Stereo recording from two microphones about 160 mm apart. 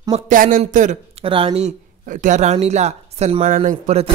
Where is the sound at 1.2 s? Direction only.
35° right (ahead or behind); by 3.7 s 50° right (ahead or behind).